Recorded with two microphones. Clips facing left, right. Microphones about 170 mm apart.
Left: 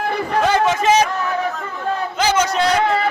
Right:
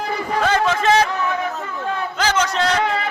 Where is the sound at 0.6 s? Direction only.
15° left (ahead or behind).